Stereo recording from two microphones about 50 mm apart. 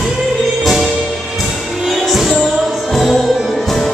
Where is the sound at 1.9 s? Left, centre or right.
Centre.